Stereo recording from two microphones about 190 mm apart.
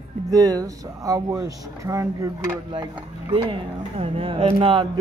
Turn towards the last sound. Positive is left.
turn(degrees=-30)  # may be behind; listen again after turning